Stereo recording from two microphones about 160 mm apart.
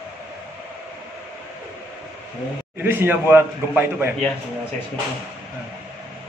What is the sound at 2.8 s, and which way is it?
A man's voice, 15° right (ahead or behind).